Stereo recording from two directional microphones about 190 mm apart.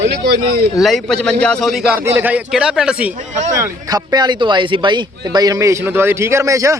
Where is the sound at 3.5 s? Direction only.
20° right (ahead or behind).